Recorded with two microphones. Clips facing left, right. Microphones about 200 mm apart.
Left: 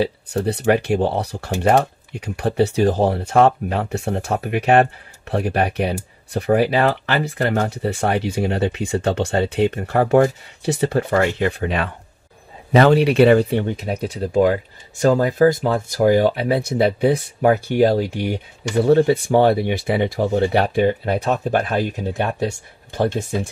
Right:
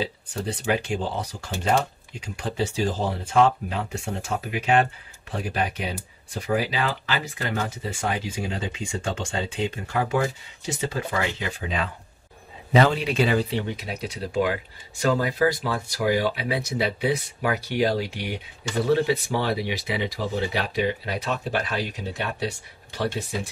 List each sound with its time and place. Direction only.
0.0 s speech: 65° left (ahead or behind)